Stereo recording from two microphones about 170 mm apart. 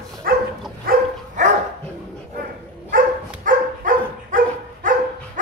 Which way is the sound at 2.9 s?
55° right (ahead or behind).